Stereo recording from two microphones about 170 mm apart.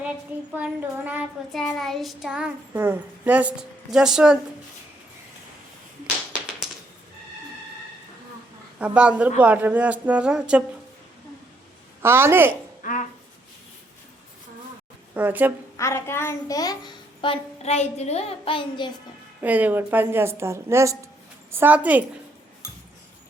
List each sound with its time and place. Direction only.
0.5 s a woman's voice: 10° right (ahead or behind)
1.5 s child singing: centre (ahead or behind)
8.8 s a woman's voice: 10° right (ahead or behind)
12.0 s a woman's voice: 15° right (ahead or behind)
12.8 s speech: 50° left (ahead or behind)
15.1 s speech: 10° right (ahead or behind)
15.8 s a child's voice: 15° left (ahead or behind); by 18.9 s 30° left (ahead or behind)
19.4 s a woman's voice: 10° right (ahead or behind)